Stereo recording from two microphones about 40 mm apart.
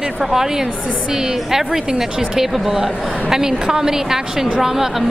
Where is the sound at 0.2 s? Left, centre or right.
Centre.